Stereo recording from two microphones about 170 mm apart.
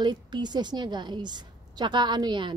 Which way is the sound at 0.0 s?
25° right (ahead or behind).